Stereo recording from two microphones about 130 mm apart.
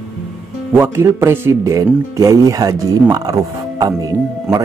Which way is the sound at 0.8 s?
20° right (ahead or behind).